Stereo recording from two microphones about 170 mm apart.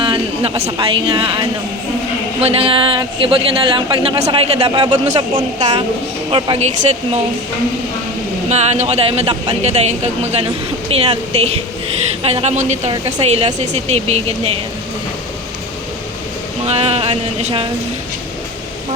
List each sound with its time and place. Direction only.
0.0 s a man's voice: 30° right (ahead or behind)
8.4 s a man's voice: 40° right (ahead or behind)
16.6 s a man's voice: 35° right (ahead or behind)